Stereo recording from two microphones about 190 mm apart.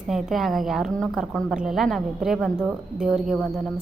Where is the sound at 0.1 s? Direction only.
Centre (ahead or behind).